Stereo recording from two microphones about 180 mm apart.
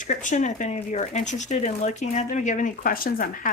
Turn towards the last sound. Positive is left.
turn(degrees=50)  # may be behind; listen again after turning